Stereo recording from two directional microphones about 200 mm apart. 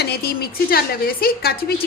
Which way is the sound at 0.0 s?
50° left (ahead or behind).